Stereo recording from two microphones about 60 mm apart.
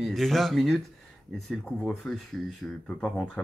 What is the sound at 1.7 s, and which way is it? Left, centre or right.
Speech, centre.